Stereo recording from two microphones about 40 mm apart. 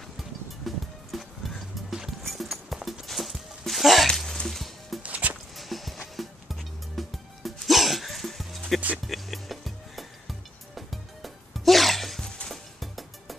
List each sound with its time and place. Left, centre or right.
0.7 s music: centre
5.0 s music: right
5.6 s music: centre